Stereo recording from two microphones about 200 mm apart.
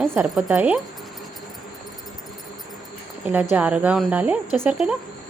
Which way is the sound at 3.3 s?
10° right (ahead or behind).